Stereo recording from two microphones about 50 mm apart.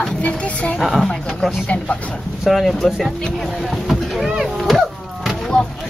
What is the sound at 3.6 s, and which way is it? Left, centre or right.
Vehicle, centre.